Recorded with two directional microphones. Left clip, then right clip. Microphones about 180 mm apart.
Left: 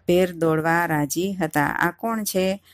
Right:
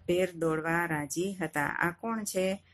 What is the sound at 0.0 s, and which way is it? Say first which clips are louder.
Speech: left 9 dB; 40° left (ahead or behind).